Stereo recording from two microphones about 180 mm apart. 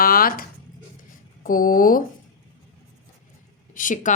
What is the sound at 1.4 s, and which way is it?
Speech, 50° left (ahead or behind).